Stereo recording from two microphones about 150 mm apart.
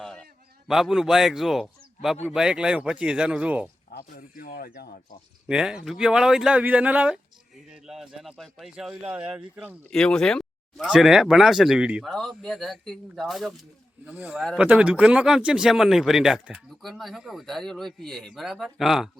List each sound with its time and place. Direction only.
0.0 s a sound: 5° left (ahead or behind)
0.7 s speech: 5° right (ahead or behind)
3.9 s speech: 75° left (ahead or behind); by 4.9 s 90° left
5.5 s speech: 5° right (ahead or behind)
9.9 s speech: 5° left (ahead or behind)